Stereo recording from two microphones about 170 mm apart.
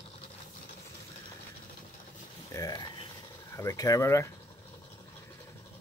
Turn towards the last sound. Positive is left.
turn(degrees=20)  # may be behind; listen again after turning